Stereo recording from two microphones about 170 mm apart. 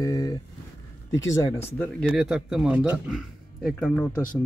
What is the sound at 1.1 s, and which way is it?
Speech, 15° left (ahead or behind).